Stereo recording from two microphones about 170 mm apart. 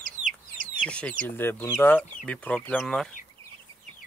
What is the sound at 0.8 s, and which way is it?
Speech, 5° left (ahead or behind).